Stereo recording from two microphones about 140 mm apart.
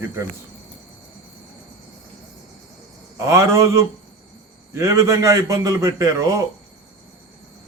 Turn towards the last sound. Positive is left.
turn(degrees=-25)  # may be behind; listen again after turning